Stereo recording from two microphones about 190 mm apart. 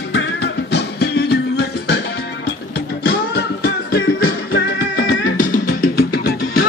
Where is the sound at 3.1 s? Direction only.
60° left (ahead or behind).